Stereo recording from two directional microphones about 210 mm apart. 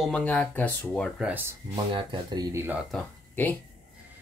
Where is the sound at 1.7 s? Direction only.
25° right (ahead or behind).